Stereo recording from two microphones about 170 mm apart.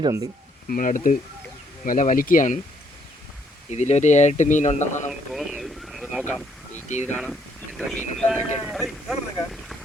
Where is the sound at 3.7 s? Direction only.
40° left (ahead or behind).